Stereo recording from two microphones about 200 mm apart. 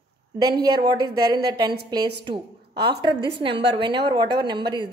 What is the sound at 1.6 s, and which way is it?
A woman's voice, 50° right (ahead or behind).